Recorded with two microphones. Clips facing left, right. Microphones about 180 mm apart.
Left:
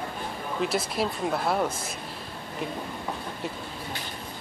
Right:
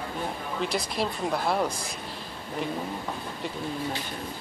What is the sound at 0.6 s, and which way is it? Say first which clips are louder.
Speech: left 2 dB; 5° left (ahead or behind).